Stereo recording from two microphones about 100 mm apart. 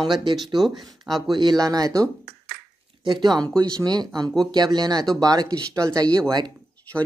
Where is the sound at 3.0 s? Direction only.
45° right (ahead or behind).